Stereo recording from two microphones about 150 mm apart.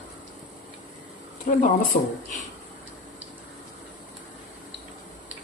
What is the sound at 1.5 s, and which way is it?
Speech, 65° left (ahead or behind).